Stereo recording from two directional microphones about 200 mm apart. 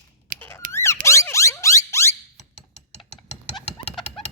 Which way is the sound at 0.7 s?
15° left (ahead or behind).